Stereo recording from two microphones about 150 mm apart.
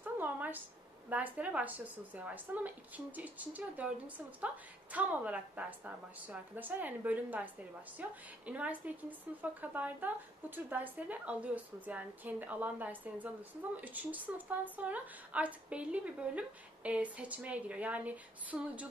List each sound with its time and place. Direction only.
0.0 s a sound: 10° right (ahead or behind)
1.1 s speech: 10° right (ahead or behind)
4.9 s speech: 10° right (ahead or behind)